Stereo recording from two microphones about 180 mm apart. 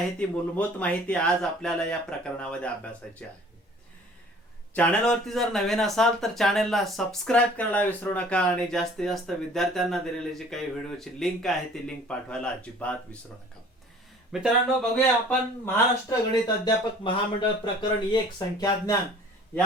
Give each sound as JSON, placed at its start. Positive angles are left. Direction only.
{"t": 0.2, "sound": "speech", "side_deg": 10}
{"t": 4.7, "sound": "speech", "side_deg": 5}
{"t": 14.4, "sound": "speech", "side_deg": 5}
{"t": 15.6, "sound": "speech", "side_deg": 20}